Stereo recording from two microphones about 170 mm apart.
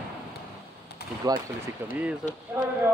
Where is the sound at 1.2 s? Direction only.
20° right (ahead or behind).